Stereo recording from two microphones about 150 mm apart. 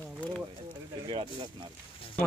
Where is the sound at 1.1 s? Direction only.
35° right (ahead or behind).